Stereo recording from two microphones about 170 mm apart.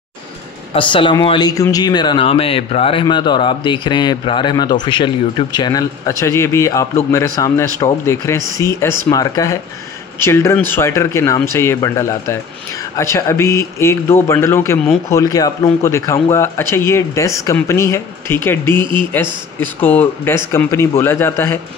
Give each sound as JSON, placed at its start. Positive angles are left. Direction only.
{"t": 0.7, "sound": "a man's voice", "side_deg": 30}